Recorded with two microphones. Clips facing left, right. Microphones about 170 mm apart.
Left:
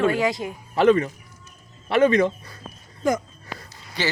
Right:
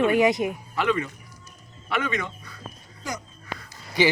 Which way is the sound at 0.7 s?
40° left (ahead or behind).